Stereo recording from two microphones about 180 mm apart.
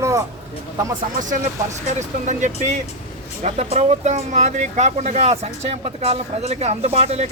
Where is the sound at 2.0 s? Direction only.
40° right (ahead or behind).